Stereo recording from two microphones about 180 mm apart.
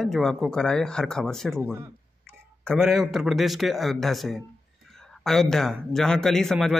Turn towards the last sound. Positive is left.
turn(degrees=0)  # may be behind; listen again after turning